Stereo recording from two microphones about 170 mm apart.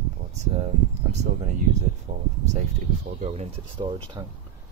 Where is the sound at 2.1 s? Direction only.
40° right (ahead or behind).